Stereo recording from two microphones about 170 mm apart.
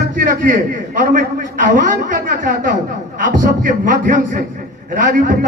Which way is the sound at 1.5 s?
55° right (ahead or behind).